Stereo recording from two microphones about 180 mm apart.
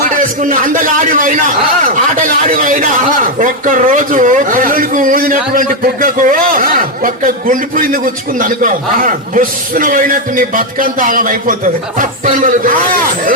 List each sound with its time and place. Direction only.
0.1 s a man's voice: 50° right (ahead or behind)